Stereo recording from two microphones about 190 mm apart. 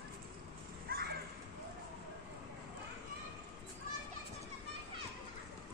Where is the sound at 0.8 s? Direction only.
55° right (ahead or behind).